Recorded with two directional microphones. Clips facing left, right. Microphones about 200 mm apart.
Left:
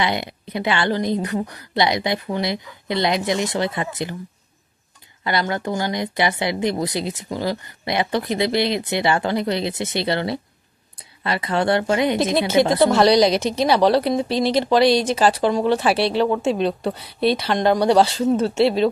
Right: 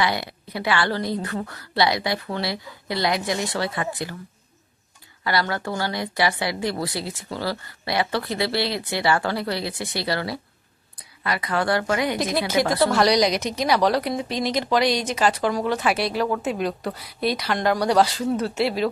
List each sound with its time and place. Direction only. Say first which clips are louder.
0.0 s a woman's voice: left 2 dB; 20° left (ahead or behind)
5.2 s a woman's voice: left 2 dB; 20° left (ahead or behind)